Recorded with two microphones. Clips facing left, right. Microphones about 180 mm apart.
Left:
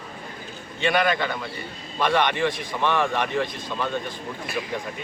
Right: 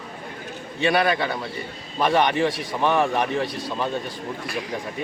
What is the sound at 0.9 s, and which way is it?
A man's voice, 35° right (ahead or behind).